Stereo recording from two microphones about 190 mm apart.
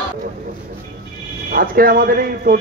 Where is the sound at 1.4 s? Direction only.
50° right (ahead or behind).